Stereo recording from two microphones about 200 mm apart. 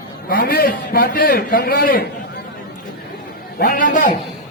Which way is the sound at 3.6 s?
45° left (ahead or behind).